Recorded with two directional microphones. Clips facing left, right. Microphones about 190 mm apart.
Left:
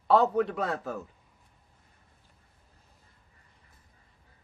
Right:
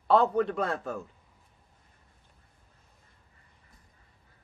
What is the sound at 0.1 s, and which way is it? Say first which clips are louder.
Speech: even; centre (ahead or behind).